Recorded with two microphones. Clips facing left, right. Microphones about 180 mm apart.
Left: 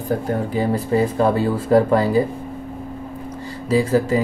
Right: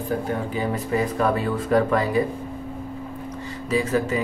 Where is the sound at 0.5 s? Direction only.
30° left (ahead or behind).